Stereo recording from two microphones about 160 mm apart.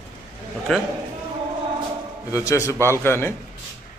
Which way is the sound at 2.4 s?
20° left (ahead or behind).